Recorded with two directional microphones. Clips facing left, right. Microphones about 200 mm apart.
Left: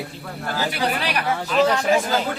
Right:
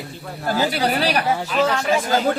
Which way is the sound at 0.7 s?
35° right (ahead or behind).